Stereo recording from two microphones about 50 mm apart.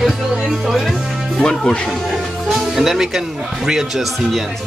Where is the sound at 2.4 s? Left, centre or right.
Centre.